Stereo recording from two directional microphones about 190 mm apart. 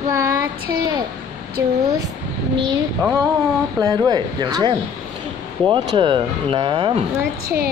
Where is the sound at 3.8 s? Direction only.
20° right (ahead or behind).